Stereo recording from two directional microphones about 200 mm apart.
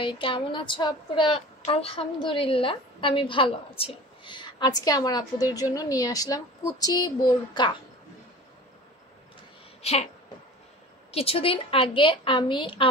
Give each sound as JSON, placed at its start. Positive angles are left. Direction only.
{"t": 0.0, "sound": "a woman's voice", "side_deg": 25}
{"t": 9.8, "sound": "a sound", "side_deg": 30}
{"t": 11.1, "sound": "a woman's voice", "side_deg": 30}